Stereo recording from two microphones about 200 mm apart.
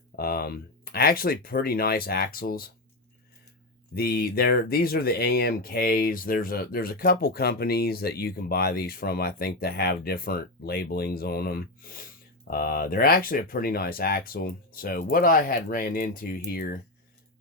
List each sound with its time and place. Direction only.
0.2 s speech: 50° left (ahead or behind)
3.9 s speech: 50° left (ahead or behind)